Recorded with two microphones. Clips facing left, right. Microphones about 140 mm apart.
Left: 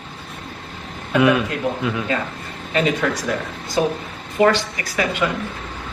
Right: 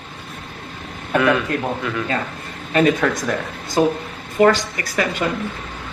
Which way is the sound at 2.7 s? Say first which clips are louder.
Right 3 dB; 50° right (ahead or behind).